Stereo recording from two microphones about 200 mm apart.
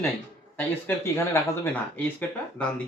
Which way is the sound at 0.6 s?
10° left (ahead or behind).